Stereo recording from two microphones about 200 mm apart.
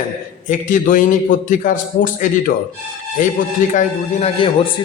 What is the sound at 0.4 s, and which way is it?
A man's voice, 40° left (ahead or behind).